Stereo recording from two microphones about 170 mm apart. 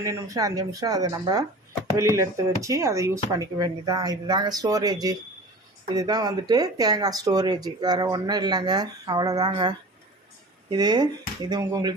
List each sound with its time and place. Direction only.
0.0 s speech: 20° right (ahead or behind)